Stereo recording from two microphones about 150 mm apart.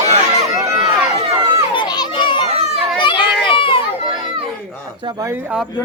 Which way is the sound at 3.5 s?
35° left (ahead or behind).